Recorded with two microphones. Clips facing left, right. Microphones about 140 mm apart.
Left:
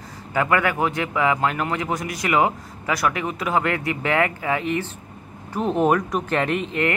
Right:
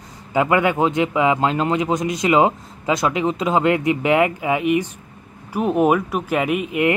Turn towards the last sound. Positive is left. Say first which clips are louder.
# right 4 dB
turn(degrees=-10)  # may be behind; listen again after turning